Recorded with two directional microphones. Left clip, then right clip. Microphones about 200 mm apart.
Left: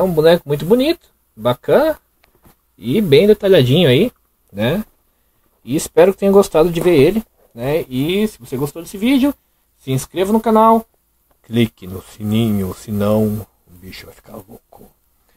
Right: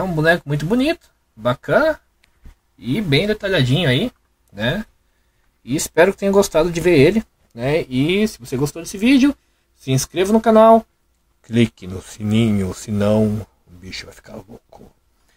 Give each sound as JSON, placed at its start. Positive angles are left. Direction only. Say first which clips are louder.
{"t": 0.0, "sound": "speech", "louder": "left 5 dB", "side_deg": 25}
{"t": 2.8, "sound": "speech", "louder": "left 7 dB", "side_deg": 30}
{"t": 5.7, "sound": "speech", "louder": "left 3 dB", "side_deg": 15}
{"t": 6.9, "sound": "speech", "louder": "left 1 dB", "side_deg": -5}